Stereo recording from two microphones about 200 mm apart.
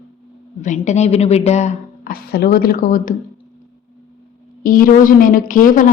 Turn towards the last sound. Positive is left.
turn(degrees=40)  # may be behind; listen again after turning